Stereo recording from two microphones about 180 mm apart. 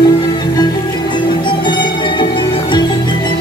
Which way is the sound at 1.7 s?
25° left (ahead or behind).